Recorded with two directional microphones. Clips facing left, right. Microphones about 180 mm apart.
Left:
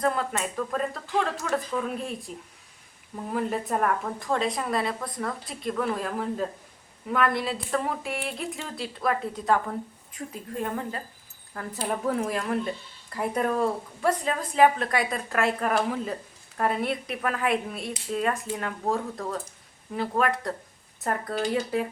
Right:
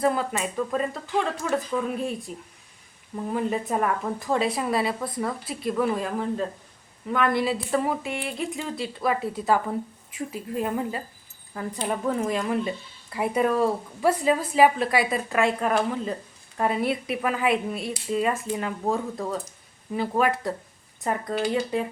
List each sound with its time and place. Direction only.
0.0 s a woman's voice: 5° right (ahead or behind)
3.3 s a woman's voice: centre (ahead or behind)